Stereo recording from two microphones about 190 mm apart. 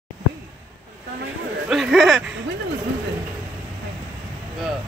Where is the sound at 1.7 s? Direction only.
Centre (ahead or behind).